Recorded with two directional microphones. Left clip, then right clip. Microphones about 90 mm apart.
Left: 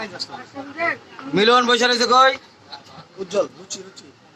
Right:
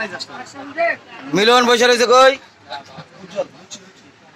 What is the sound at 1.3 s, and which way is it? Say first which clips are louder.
A man's voice: right 3 dB; 30° right (ahead or behind).